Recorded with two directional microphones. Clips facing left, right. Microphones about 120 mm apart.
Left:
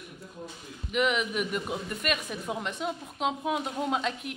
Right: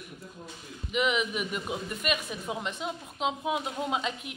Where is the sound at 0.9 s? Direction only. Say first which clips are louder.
Left 1 dB; centre (ahead or behind).